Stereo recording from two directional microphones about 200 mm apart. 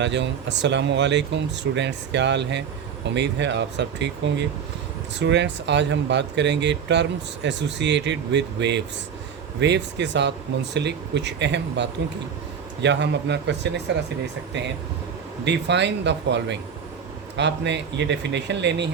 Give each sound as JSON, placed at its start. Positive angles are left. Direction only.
{"t": 0.0, "sound": "speech", "side_deg": -60}
{"t": 15.4, "sound": "speech", "side_deg": -60}